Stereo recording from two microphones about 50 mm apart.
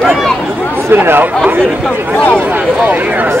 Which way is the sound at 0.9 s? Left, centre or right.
Right.